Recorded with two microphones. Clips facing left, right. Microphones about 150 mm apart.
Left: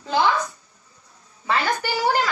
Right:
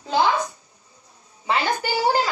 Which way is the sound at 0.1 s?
25° right (ahead or behind).